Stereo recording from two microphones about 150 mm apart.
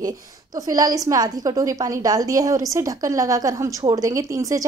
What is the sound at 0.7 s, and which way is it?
A woman's voice, 25° right (ahead or behind).